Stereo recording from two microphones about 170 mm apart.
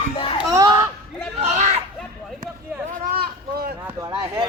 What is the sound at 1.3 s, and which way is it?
Chatter, 40° right (ahead or behind).